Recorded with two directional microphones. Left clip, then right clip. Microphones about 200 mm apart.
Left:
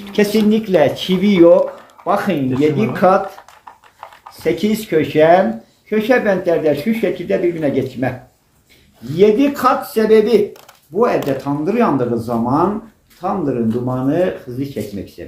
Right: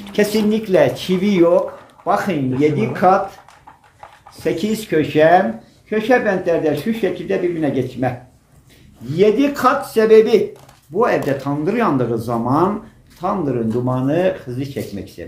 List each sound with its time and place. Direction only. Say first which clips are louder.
0.1 s speech: left 2 dB; centre (ahead or behind)
4.4 s speech: left 2 dB; 10° left (ahead or behind)
9.1 s speech: left 2 dB; 5° right (ahead or behind); by 14.7 s 35° right (ahead or behind)
14.7 s speech: left 1 dB; 15° right (ahead or behind)